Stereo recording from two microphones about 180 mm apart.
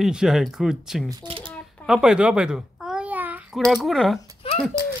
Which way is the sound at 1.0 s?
30° right (ahead or behind).